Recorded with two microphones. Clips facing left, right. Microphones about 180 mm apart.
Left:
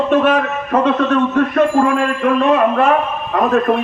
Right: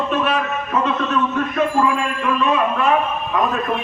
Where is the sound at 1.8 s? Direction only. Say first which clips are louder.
Left 5 dB; 55° left (ahead or behind).